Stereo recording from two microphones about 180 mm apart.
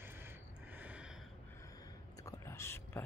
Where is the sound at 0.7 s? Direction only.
5° right (ahead or behind).